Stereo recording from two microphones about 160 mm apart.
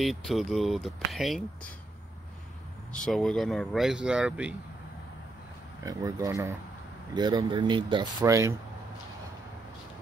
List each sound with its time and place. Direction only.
0.0 s speech: centre (ahead or behind)
2.9 s speech: 5° left (ahead or behind)
5.9 s speech: 20° right (ahead or behind)